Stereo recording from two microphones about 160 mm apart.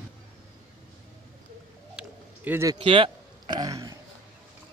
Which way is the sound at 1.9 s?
10° right (ahead or behind).